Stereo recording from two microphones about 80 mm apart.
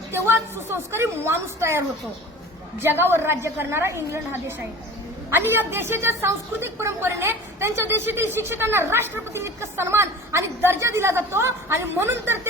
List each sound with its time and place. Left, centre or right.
0.1 s a woman's voice: right
2.8 s a woman's voice: right